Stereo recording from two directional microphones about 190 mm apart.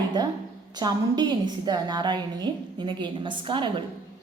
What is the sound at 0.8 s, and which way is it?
A woman's voice, 20° right (ahead or behind).